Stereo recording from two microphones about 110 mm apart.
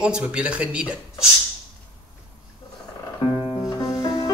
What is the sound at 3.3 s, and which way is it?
Music, 35° left (ahead or behind).